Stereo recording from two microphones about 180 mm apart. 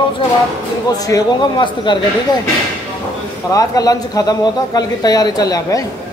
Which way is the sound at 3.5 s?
20° left (ahead or behind).